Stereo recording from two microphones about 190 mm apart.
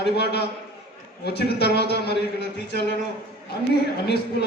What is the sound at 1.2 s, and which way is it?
A man's voice, 60° left (ahead or behind).